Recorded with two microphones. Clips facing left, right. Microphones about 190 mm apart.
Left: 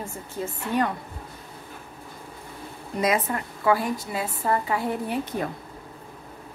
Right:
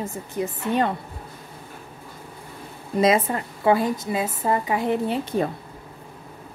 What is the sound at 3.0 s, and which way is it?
A woman's voice, 25° right (ahead or behind).